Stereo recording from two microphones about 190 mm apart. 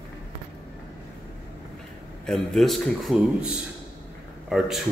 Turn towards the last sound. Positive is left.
turn(degrees=0)  # may be behind; listen again after turning